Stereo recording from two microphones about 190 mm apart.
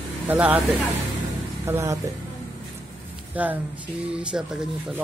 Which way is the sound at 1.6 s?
15° right (ahead or behind).